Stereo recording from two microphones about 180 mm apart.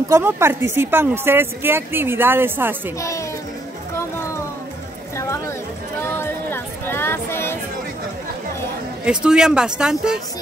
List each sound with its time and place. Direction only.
0.1 s a woman's voice: 15° right (ahead or behind)
3.0 s music: 15° left (ahead or behind)
5.1 s a sound: 15° left (ahead or behind)
6.0 s music: 15° left (ahead or behind)
9.0 s speech: 5° right (ahead or behind)